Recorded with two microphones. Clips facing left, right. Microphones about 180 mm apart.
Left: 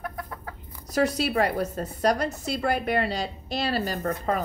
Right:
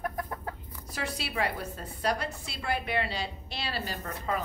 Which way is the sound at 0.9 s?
40° left (ahead or behind).